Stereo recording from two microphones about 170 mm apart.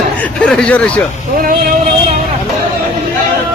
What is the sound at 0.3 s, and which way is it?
Speech, 5° left (ahead or behind).